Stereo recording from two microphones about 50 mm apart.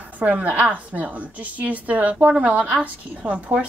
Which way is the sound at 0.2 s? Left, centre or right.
Right.